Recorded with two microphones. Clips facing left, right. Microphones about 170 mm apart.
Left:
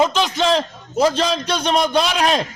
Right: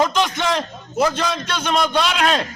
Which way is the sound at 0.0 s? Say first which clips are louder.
Left 2 dB; 25° left (ahead or behind).